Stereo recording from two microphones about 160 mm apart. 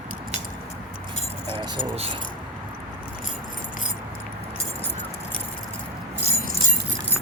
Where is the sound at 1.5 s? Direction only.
30° right (ahead or behind).